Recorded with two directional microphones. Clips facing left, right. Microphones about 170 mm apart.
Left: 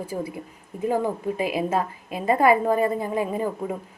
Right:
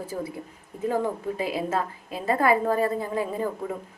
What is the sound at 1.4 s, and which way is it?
A woman's voice, 15° left (ahead or behind).